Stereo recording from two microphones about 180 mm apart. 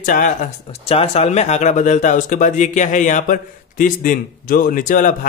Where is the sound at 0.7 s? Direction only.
30° left (ahead or behind).